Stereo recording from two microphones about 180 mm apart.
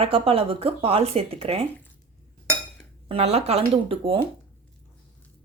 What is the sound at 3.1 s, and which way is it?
Speech, 35° right (ahead or behind).